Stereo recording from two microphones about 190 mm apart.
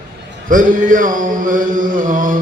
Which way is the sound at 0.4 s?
45° right (ahead or behind).